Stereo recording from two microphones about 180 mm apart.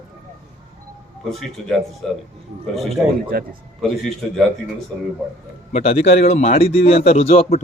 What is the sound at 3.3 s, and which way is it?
Speech, 55° right (ahead or behind).